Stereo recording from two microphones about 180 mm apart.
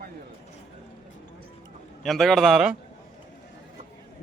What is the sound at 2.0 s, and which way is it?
Speech, centre (ahead or behind).